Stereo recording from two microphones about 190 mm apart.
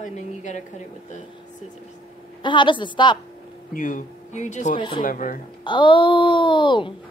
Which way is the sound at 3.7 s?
45° left (ahead or behind).